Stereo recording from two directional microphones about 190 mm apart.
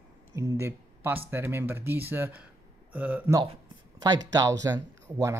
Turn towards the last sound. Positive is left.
turn(degrees=-15)  # may be behind; listen again after turning